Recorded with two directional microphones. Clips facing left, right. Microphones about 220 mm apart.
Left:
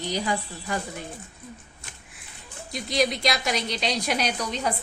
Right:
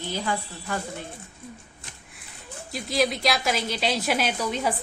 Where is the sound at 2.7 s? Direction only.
Centre (ahead or behind).